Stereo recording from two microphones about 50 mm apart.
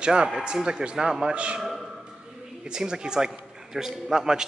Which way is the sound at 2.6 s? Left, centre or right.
Centre.